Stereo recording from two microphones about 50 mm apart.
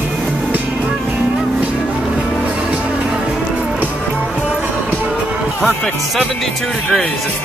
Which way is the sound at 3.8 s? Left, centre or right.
Right.